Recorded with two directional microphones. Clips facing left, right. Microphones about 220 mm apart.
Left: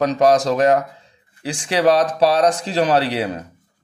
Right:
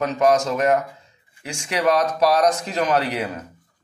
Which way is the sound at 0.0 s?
35° left (ahead or behind).